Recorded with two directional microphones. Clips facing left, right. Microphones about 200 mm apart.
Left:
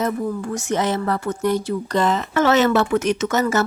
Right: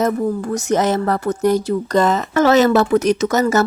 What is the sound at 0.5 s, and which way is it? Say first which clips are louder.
Speech: right 5 dB; 40° right (ahead or behind).